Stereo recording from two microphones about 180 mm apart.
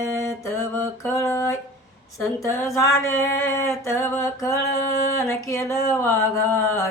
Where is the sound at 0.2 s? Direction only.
15° left (ahead or behind).